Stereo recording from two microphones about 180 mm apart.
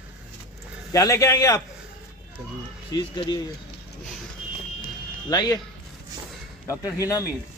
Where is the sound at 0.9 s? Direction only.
20° left (ahead or behind).